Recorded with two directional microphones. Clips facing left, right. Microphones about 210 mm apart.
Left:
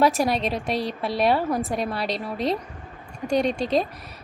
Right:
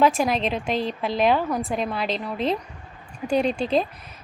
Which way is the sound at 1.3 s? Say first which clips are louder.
Even; 5° left (ahead or behind).